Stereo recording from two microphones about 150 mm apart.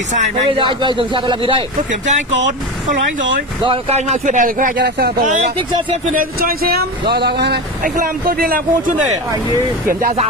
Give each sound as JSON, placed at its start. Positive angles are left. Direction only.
{"t": 0.5, "sound": "a man's voice", "side_deg": -35}
{"t": 1.9, "sound": "speech", "side_deg": -55}
{"t": 3.6, "sound": "speech", "side_deg": -40}